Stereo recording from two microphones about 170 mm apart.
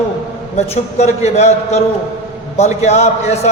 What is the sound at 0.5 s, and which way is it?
A man's voice, 40° left (ahead or behind).